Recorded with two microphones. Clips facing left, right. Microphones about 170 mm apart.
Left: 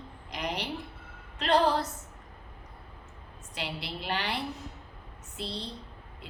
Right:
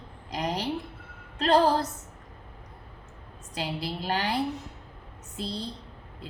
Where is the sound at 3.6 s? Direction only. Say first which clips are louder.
Right 5 dB; 40° right (ahead or behind).